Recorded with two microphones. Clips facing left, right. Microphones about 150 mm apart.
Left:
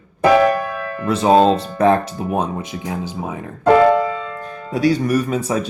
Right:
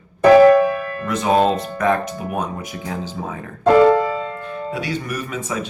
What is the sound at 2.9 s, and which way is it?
Speech, 15° left (ahead or behind).